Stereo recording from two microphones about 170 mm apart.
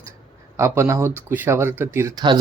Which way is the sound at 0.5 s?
15° right (ahead or behind).